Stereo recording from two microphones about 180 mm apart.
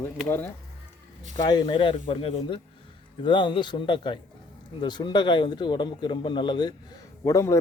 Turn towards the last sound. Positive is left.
turn(degrees=15)  # may be behind; listen again after turning